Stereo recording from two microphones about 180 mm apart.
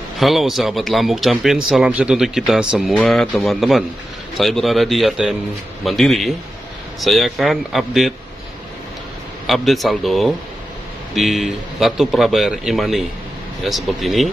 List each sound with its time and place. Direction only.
0.2 s a man's voice: centre (ahead or behind)
9.5 s a man's voice: centre (ahead or behind)